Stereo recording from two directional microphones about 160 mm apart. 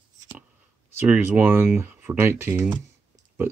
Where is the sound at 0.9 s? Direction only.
15° right (ahead or behind).